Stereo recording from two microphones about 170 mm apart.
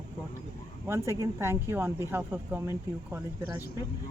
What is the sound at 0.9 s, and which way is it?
Speech, 15° right (ahead or behind).